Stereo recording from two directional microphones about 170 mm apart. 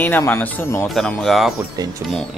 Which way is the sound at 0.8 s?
Centre (ahead or behind).